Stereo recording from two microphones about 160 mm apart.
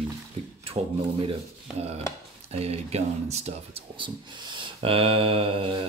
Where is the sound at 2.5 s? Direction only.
40° right (ahead or behind).